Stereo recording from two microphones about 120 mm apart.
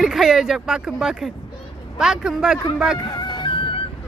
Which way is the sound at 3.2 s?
40° left (ahead or behind).